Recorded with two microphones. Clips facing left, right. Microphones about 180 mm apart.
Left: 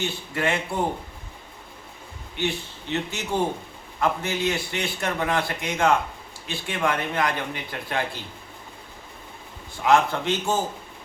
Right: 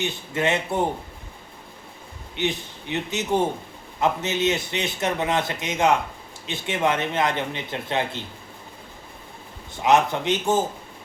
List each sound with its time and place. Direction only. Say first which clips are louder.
0.0 s a man's voice: right 2 dB; 20° right (ahead or behind)
2.3 s a man's voice: right 1 dB; 20° right (ahead or behind)
9.8 s a man's voice: right 1 dB; 20° right (ahead or behind)